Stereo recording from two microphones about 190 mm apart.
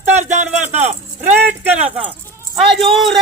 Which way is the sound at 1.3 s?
10° right (ahead or behind).